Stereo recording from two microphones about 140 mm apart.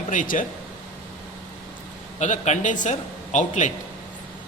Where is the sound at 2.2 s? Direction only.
60° left (ahead or behind).